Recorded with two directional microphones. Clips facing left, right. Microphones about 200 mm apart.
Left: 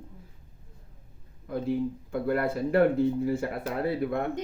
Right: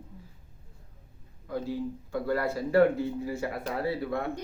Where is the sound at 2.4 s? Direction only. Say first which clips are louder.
Right 1 dB; 55° left (ahead or behind).